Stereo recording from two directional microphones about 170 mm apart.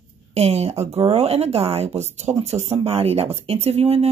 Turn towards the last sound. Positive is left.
turn(degrees=-40)  # may be behind; listen again after turning